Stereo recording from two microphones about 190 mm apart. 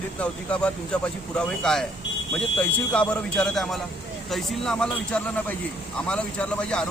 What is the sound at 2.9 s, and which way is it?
A man's voice, 5° left (ahead or behind).